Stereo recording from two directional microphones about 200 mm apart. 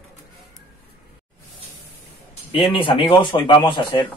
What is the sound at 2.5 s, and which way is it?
Speech, 25° left (ahead or behind).